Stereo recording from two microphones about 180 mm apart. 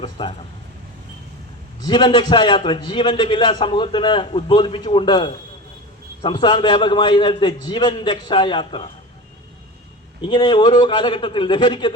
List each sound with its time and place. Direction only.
0.0 s a man's voice: 25° left (ahead or behind)
1.8 s a man's voice: 25° left (ahead or behind)
10.2 s a man's voice: 25° left (ahead or behind)